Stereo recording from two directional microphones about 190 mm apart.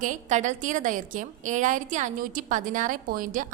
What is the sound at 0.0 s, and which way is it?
A woman's voice, 40° right (ahead or behind).